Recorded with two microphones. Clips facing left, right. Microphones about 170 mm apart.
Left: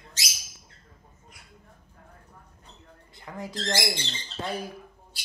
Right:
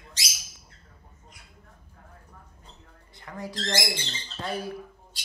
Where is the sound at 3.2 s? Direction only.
20° left (ahead or behind).